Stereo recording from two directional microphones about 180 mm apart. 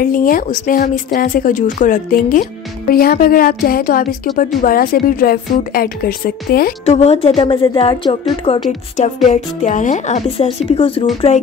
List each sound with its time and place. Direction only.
0.0 s a woman's voice: 50° left (ahead or behind)
6.9 s a woman's voice: 35° left (ahead or behind)
8.9 s a woman's voice: 40° left (ahead or behind)